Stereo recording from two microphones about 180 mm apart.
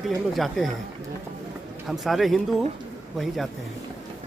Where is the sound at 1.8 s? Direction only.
Centre (ahead or behind).